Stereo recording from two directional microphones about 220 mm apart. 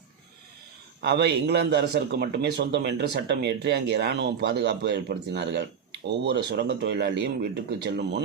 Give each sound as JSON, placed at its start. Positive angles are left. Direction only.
{"t": 1.0, "sound": "a man's voice", "side_deg": -50}